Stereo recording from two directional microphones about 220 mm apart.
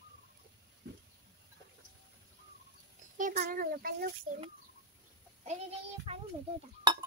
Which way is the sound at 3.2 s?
35° right (ahead or behind).